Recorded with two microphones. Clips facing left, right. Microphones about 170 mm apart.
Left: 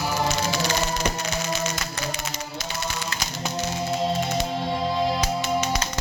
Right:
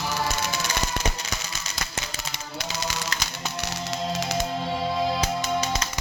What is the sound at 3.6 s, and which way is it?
Music, 85° right.